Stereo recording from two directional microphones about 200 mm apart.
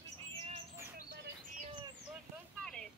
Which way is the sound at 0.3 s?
30° right (ahead or behind).